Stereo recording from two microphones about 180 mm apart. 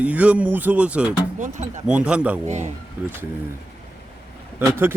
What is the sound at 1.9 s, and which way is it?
Speech, 5° right (ahead or behind).